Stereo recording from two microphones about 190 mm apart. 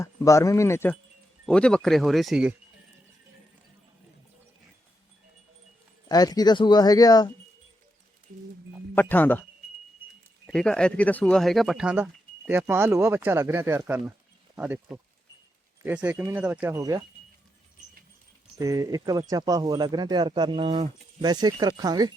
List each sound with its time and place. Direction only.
0.0 s speech: 15° left (ahead or behind); by 2.6 s 5° right (ahead or behind)
6.1 s speech: 20° left (ahead or behind)
9.0 s speech: 10° left (ahead or behind); by 17.0 s 15° right (ahead or behind)
18.5 s speech: 15° right (ahead or behind)